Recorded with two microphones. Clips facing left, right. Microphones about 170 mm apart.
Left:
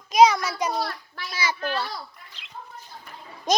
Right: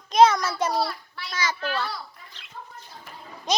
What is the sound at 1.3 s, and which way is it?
Speech, 10° left (ahead or behind).